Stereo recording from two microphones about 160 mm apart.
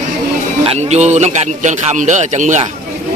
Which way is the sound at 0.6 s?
40° right (ahead or behind).